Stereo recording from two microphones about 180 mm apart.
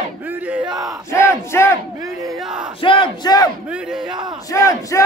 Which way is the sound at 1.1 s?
15° left (ahead or behind).